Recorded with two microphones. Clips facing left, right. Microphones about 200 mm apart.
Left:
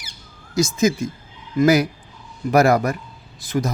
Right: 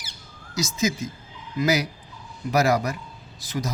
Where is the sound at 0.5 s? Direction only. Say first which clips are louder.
Left 7 dB; 55° left (ahead or behind).